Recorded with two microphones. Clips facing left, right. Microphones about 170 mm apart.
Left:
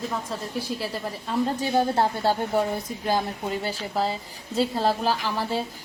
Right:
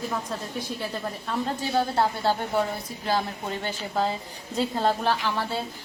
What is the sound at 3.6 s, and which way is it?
A woman's voice, centre (ahead or behind).